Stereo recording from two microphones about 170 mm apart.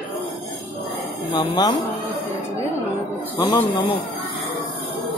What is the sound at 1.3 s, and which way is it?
Speech, 25° left (ahead or behind).